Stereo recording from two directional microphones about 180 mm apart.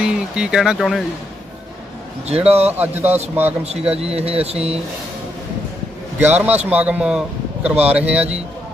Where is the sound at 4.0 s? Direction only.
35° right (ahead or behind).